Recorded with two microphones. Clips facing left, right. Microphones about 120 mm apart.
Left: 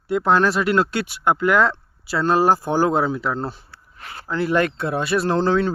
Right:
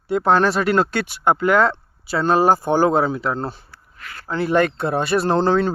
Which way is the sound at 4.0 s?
30° left (ahead or behind).